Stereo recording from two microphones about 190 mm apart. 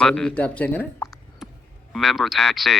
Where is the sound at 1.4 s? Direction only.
Centre (ahead or behind).